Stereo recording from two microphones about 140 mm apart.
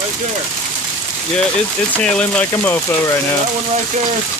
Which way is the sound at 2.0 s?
10° left (ahead or behind).